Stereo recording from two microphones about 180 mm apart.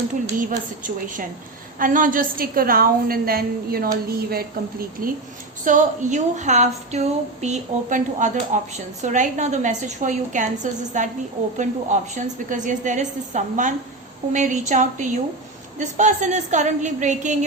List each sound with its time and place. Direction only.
0.3 s speech: 45° right (ahead or behind)